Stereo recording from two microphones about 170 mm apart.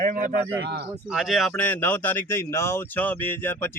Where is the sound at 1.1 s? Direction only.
Centre (ahead or behind).